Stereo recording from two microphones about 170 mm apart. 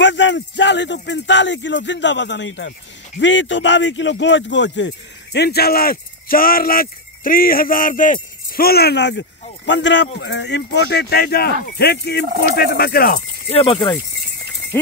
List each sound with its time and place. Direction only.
0.0 s speech: 90° left; by 13.2 s 65° left (ahead or behind)
13.5 s speech: 30° left (ahead or behind)